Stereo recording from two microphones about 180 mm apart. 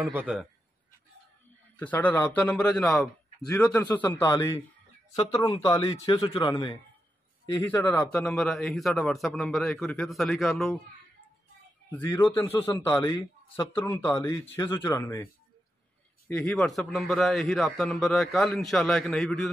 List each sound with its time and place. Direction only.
0.0 s a man's voice: 10° right (ahead or behind)
1.8 s a man's voice: 10° left (ahead or behind)
5.9 s speech: 30° left (ahead or behind)
7.6 s a man's voice: 10° left (ahead or behind)
12.0 s a man's voice: 20° left (ahead or behind)
12.7 s speech: 25° left (ahead or behind)
13.7 s a man's voice: 10° left (ahead or behind)
16.3 s a man's voice: centre (ahead or behind)